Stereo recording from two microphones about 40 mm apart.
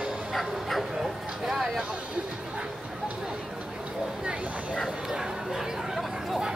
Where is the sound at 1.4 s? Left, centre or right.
Centre.